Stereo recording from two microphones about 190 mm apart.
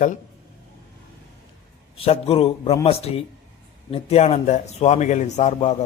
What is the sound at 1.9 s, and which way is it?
A man's voice, 30° left (ahead or behind).